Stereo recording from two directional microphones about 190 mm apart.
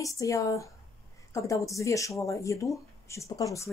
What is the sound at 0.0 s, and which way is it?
Speech, 15° left (ahead or behind).